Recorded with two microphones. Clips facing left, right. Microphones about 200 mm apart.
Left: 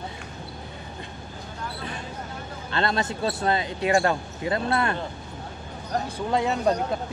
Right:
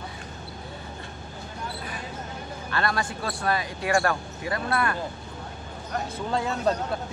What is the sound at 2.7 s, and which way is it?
Speech, 25° left (ahead or behind).